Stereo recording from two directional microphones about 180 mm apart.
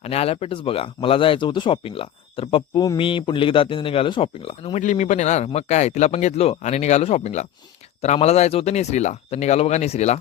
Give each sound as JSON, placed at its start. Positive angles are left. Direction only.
{"t": 0.0, "sound": "speech", "side_deg": 35}